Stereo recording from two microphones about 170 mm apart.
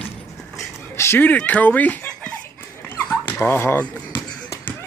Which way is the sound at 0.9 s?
15° left (ahead or behind).